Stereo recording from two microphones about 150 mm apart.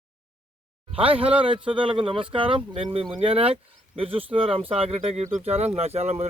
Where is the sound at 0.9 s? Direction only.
40° right (ahead or behind).